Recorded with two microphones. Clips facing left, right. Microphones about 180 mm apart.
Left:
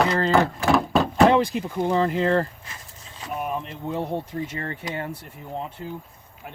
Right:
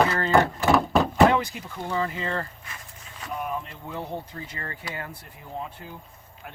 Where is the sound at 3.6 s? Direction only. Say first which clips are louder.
Left 6 dB; 25° left (ahead or behind).